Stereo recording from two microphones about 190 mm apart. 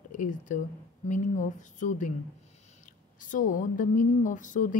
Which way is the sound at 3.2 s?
45° left (ahead or behind).